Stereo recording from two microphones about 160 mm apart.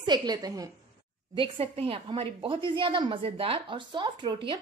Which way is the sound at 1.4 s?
35° right (ahead or behind).